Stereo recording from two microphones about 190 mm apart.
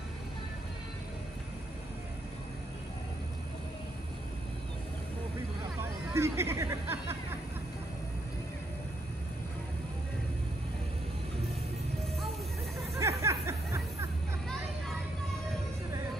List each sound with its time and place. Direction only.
5.8 s hubbub: 15° right (ahead or behind)
12.9 s music: 15° right (ahead or behind)